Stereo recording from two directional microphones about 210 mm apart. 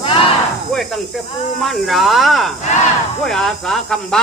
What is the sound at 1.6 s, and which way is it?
Speech, centre (ahead or behind).